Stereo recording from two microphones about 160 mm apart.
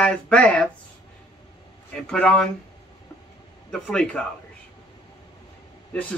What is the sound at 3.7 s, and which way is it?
Speech, 5° left (ahead or behind).